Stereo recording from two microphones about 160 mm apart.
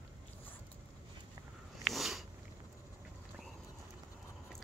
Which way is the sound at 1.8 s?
Centre (ahead or behind).